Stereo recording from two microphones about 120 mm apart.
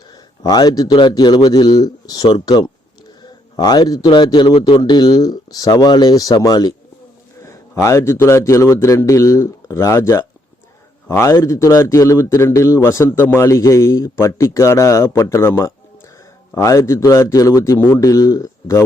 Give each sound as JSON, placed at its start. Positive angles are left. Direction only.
{"t": 0.1, "sound": "a man's voice", "side_deg": 35}
{"t": 3.2, "sound": "a sound", "side_deg": 35}
{"t": 4.0, "sound": "a man's voice", "side_deg": 40}